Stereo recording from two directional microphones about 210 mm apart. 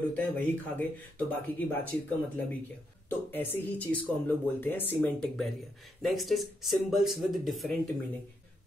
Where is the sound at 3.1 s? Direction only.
10° left (ahead or behind).